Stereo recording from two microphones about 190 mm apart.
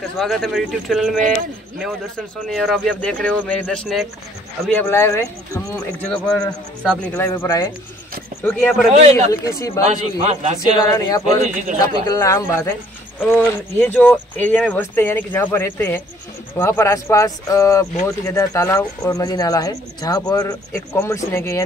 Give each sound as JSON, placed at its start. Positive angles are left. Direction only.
{"t": 0.2, "sound": "speech", "side_deg": 0}
{"t": 2.4, "sound": "speech", "side_deg": 0}
{"t": 8.9, "sound": "a man's voice", "side_deg": -35}
{"t": 9.3, "sound": "speech", "side_deg": 15}
{"t": 9.8, "sound": "a man's voice", "side_deg": -35}
{"t": 10.8, "sound": "speech", "side_deg": 20}